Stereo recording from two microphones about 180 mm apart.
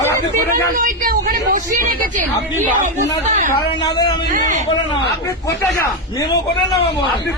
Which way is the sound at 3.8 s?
20° left (ahead or behind).